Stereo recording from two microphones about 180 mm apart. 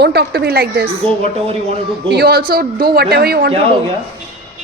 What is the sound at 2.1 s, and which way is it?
A man's voice, 60° right (ahead or behind).